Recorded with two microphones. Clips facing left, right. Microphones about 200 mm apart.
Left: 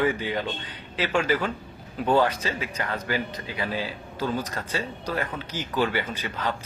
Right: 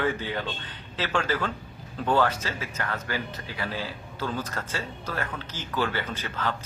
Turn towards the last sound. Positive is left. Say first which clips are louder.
# left 1 dB
turn(degrees=15)  # may be behind; listen again after turning